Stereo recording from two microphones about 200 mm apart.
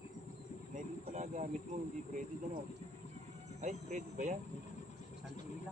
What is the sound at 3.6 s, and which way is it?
Speech, 35° right (ahead or behind).